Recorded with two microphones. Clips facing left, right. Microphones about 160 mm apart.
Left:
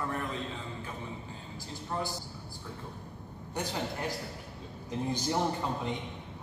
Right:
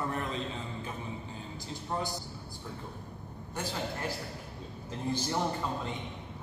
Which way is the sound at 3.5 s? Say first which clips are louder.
Left 1 dB; 15° left (ahead or behind).